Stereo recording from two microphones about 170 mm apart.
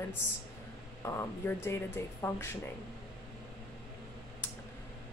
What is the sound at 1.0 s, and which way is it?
Speech, 15° left (ahead or behind).